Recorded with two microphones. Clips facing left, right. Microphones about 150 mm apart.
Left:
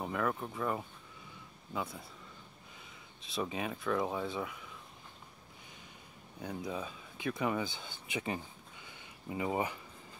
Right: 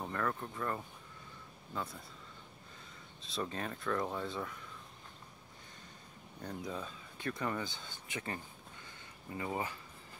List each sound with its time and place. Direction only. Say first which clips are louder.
0.0 s speech: left 3 dB; 10° left (ahead or behind)
3.3 s speech: left 3 dB; 10° left (ahead or behind)
6.4 s speech: left 3 dB; 5° left (ahead or behind)
8.8 s a sound: left 6 dB; 15° left (ahead or behind)